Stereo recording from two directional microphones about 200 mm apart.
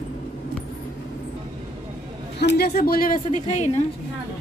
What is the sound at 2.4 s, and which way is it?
Speech, 55° left (ahead or behind).